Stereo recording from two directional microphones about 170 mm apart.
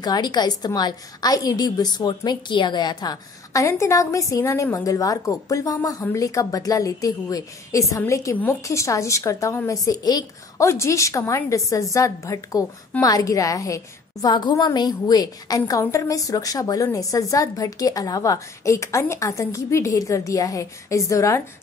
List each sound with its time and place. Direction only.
0.0 s a woman's voice: 25° left (ahead or behind)